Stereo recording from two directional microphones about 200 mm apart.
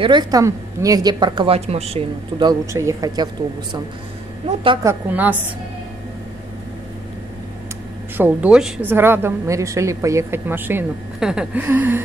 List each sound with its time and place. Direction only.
0.0 s a woman's voice: 20° right (ahead or behind)
5.1 s a woman's voice: 10° right (ahead or behind)
8.2 s a woman's voice: 5° right (ahead or behind)